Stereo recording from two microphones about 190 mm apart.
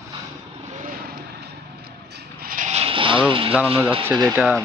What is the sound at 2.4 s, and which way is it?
Vehicle, 45° right (ahead or behind).